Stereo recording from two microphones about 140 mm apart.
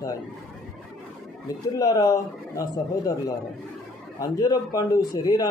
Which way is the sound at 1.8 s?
25° left (ahead or behind).